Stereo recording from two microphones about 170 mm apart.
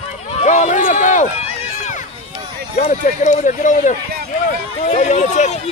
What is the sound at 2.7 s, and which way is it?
Speech, 45° left (ahead or behind).